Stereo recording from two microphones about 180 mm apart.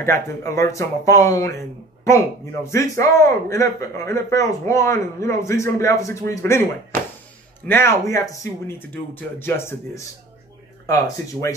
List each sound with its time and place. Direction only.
0.0 s speech: 15° left (ahead or behind)